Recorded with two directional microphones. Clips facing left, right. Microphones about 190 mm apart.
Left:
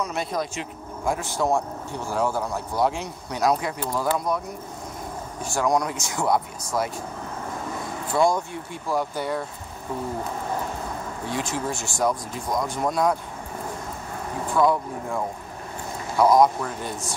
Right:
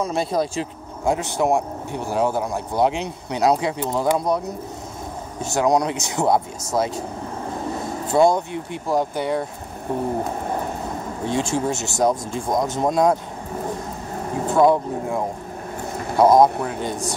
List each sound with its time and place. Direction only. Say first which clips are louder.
0.0 s speech: right 5 dB; 30° right (ahead or behind)
5.4 s speech: right 4 dB; 20° right (ahead or behind)
8.1 s speech: right 5 dB; 25° right (ahead or behind)
11.2 s speech: right 6 dB; 25° right (ahead or behind)
14.5 s speech: right 5 dB; 25° right (ahead or behind)